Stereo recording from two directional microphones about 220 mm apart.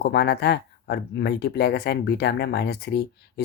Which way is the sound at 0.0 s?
50° left (ahead or behind).